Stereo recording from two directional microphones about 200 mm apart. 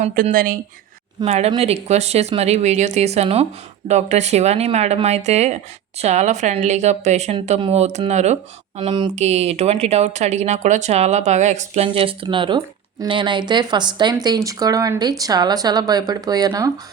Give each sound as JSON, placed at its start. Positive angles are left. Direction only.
{"t": 0.0, "sound": "speech", "side_deg": -45}
{"t": 1.2, "sound": "speech", "side_deg": -30}
{"t": 8.8, "sound": "speech", "side_deg": -25}
{"t": 9.1, "sound": "speech", "side_deg": -35}